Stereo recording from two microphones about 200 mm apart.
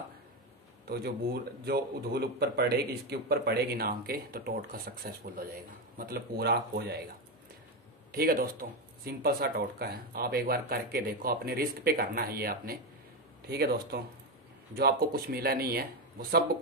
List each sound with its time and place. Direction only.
0.8 s speech: 50° right (ahead or behind)